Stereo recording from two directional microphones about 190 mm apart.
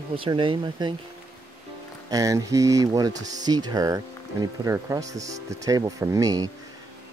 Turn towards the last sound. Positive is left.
turn(degrees=-20)  # may be behind; listen again after turning